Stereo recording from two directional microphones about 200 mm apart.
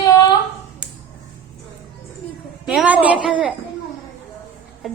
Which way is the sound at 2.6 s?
5° right (ahead or behind).